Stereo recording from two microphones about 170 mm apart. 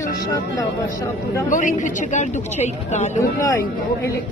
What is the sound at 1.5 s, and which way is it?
Speech, 50° left (ahead or behind).